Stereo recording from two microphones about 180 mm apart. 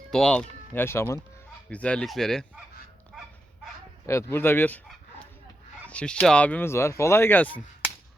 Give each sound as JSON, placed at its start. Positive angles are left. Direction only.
{"t": 0.1, "sound": "speech", "side_deg": 5}
{"t": 3.1, "sound": "dog", "side_deg": 0}
{"t": 4.0, "sound": "speech", "side_deg": 15}
{"t": 5.9, "sound": "speech", "side_deg": 5}